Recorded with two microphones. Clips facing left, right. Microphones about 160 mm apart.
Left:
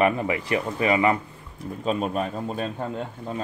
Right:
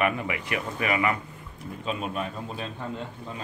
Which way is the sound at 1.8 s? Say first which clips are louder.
Left 6 dB; 40° left (ahead or behind).